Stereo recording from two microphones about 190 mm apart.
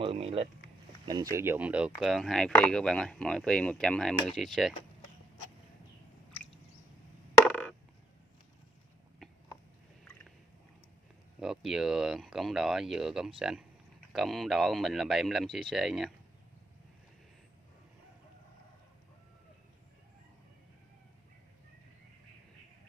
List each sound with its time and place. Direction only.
0.0 s speech: 30° right (ahead or behind)
1.0 s speech: 20° right (ahead or behind); by 4.7 s centre (ahead or behind)
11.3 s speech: centre (ahead or behind)